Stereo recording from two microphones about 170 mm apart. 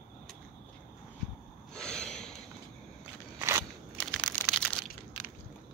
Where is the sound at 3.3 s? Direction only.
15° right (ahead or behind).